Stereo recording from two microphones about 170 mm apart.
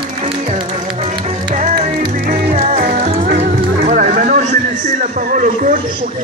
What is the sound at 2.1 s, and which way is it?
Music, 50° right (ahead or behind).